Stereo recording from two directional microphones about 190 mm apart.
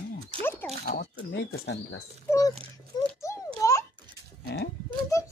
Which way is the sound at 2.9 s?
20° left (ahead or behind).